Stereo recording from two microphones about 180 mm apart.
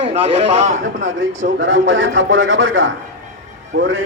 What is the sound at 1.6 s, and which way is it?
A man's voice, 90° right.